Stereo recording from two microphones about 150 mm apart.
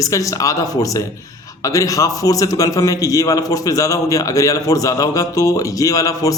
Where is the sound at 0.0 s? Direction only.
20° left (ahead or behind).